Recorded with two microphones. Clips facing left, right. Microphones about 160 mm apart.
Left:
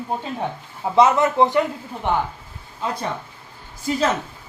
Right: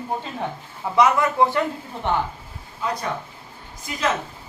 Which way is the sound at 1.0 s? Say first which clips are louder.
Left 2 dB; 25° left (ahead or behind).